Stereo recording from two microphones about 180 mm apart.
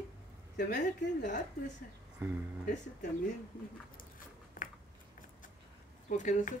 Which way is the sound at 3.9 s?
50° left (ahead or behind).